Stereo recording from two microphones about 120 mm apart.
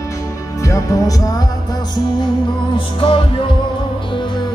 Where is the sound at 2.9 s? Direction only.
45° left (ahead or behind).